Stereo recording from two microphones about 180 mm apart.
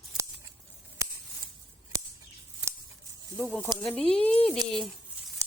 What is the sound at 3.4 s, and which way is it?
Speech, 10° right (ahead or behind).